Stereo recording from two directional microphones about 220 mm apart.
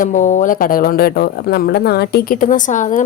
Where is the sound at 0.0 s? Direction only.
35° left (ahead or behind).